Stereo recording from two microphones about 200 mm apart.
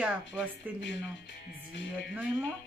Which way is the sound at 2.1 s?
5° right (ahead or behind).